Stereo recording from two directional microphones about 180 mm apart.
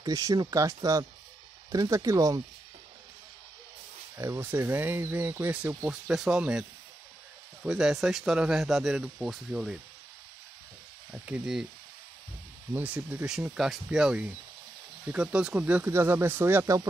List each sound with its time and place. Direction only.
0.0 s speech: 20° right (ahead or behind)
4.2 s speech: 15° right (ahead or behind)
7.6 s speech: 5° right (ahead or behind)
11.2 s speech: 5° right (ahead or behind)
12.7 s speech: 10° right (ahead or behind)